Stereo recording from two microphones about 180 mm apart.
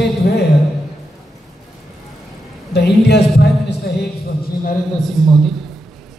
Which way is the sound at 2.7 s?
65° left (ahead or behind).